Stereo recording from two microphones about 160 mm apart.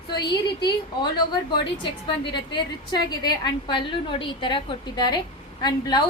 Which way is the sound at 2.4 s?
30° left (ahead or behind).